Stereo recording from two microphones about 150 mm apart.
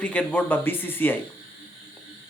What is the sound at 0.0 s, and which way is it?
Speech, 10° left (ahead or behind).